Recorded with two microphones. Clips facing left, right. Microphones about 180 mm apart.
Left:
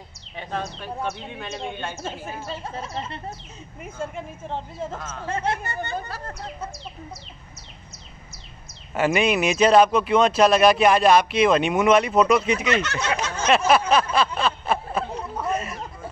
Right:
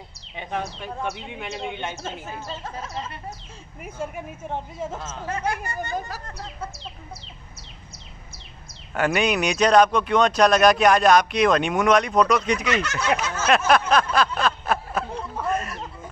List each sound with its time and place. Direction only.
0.4 s speech: 15° right (ahead or behind)
2.6 s speech: 30° left (ahead or behind)
3.8 s speech: 15° right (ahead or behind)
4.9 s speech: 25° right (ahead or behind)
5.3 s speech: 25° left (ahead or behind)
8.9 s speech: centre (ahead or behind)
13.0 s a sound: 5° right (ahead or behind)
13.6 s a sound: 5° left (ahead or behind)